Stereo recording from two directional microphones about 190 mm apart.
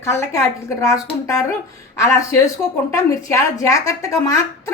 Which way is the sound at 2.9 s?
15° left (ahead or behind).